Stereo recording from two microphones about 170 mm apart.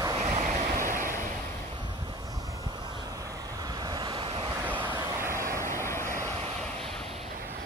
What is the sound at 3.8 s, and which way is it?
Vehicle, 25° right (ahead or behind).